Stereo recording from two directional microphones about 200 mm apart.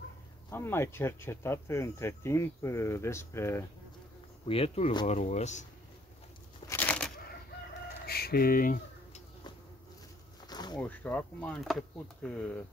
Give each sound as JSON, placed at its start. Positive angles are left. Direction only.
{"t": 0.5, "sound": "speech", "side_deg": 10}
{"t": 4.5, "sound": "speech", "side_deg": 30}
{"t": 6.7, "sound": "a sound", "side_deg": 10}
{"t": 8.1, "sound": "a sound", "side_deg": 50}
{"t": 10.4, "sound": "insect", "side_deg": 20}
{"t": 10.8, "sound": "speech", "side_deg": 10}